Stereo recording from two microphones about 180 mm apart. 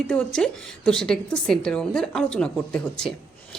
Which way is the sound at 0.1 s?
5° left (ahead or behind).